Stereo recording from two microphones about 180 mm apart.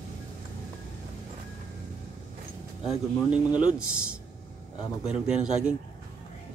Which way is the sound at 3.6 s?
5° right (ahead or behind).